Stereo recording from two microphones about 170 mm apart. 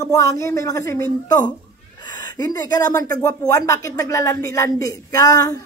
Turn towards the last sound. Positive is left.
turn(degrees=20)  # may be behind; listen again after turning